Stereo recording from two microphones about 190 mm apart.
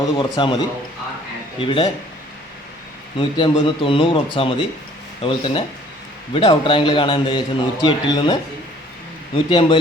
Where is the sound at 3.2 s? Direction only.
25° left (ahead or behind).